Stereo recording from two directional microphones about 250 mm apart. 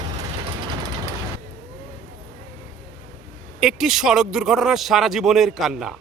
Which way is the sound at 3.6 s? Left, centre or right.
Centre.